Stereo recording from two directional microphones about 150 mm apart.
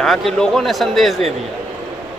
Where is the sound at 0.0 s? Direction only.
Centre (ahead or behind).